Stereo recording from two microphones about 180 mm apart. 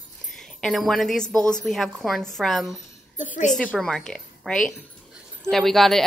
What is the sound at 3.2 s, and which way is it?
Speech, 45° left (ahead or behind).